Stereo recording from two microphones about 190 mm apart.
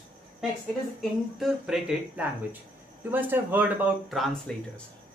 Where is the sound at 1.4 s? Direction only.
Centre (ahead or behind).